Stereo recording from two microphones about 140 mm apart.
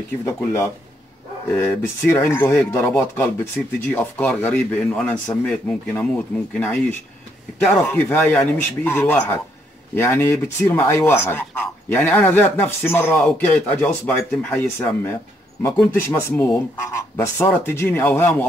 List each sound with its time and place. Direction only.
0.4 s speech: 20° left (ahead or behind)